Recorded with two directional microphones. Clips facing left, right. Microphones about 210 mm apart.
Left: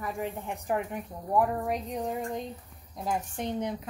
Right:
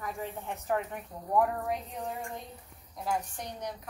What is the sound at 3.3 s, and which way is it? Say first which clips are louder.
Speech: left 8 dB; 25° left (ahead or behind).